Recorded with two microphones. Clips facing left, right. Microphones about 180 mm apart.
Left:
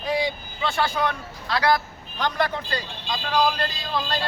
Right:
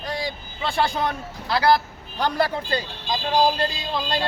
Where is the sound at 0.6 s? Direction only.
30° right (ahead or behind).